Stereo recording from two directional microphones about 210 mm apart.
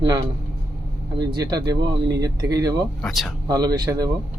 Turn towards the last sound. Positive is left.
turn(degrees=-20)  # may be behind; listen again after turning